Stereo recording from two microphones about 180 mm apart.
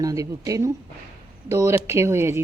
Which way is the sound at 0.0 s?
20° right (ahead or behind).